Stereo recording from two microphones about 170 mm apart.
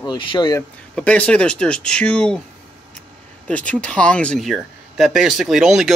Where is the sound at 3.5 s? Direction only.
10° left (ahead or behind).